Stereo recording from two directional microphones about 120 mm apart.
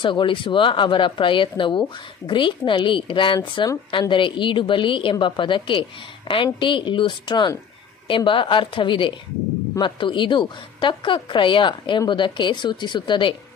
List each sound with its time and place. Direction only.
0.0 s a woman's voice: 45° left (ahead or behind)